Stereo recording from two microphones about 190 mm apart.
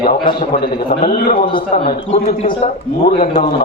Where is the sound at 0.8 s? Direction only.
45° left (ahead or behind).